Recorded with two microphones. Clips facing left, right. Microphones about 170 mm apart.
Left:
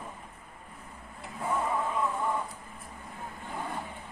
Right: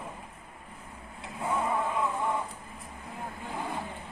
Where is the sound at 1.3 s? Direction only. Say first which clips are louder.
Right 1 dB; centre (ahead or behind).